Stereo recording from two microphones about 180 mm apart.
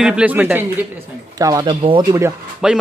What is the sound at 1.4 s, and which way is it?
Speech, 20° right (ahead or behind).